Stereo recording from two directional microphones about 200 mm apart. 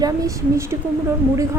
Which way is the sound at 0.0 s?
15° right (ahead or behind).